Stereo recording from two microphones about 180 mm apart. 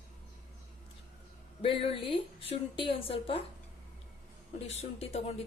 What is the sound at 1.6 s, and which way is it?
A woman's voice, 30° left (ahead or behind).